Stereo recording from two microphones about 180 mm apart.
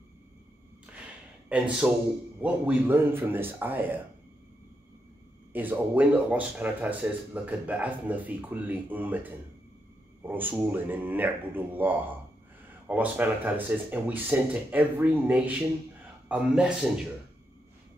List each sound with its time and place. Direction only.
1.5 s a man's voice: 10° right (ahead or behind)
5.5 s speech: 10° right (ahead or behind)